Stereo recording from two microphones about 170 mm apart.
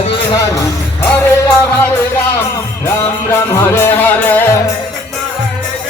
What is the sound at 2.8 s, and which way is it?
Music, 15° left (ahead or behind).